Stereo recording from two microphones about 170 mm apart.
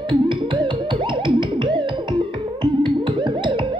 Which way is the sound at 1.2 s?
30° right (ahead or behind).